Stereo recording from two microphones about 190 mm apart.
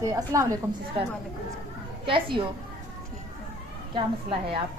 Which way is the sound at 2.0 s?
25° right (ahead or behind).